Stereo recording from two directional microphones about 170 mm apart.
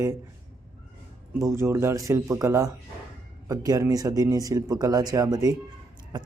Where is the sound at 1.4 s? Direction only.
15° right (ahead or behind).